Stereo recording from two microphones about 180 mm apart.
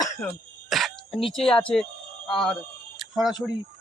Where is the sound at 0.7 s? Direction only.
Centre (ahead or behind).